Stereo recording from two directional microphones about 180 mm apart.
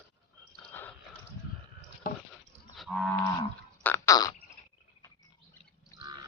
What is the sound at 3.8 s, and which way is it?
Fart, 10° left (ahead or behind).